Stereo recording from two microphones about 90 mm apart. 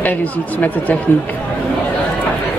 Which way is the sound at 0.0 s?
15° left (ahead or behind).